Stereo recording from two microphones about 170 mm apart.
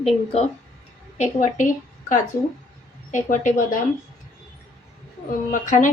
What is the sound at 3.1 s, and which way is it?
Speech, 50° left (ahead or behind).